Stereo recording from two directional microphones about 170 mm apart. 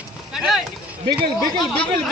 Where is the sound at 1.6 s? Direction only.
5° left (ahead or behind).